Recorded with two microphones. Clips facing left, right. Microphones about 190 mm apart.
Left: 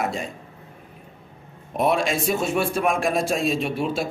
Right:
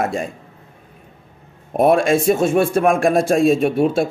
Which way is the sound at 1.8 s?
50° right (ahead or behind).